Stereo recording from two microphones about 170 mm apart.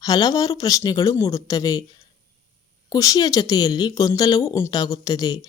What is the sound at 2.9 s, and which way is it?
A woman's voice, 20° left (ahead or behind).